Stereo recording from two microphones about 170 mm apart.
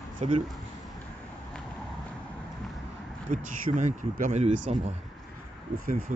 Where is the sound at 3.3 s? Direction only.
50° right (ahead or behind).